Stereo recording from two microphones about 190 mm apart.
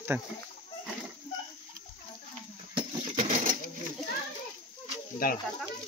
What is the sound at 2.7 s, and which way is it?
Coin, 25° right (ahead or behind).